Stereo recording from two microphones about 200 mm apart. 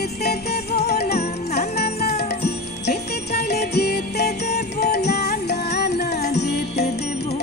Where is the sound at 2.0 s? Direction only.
55° left (ahead or behind).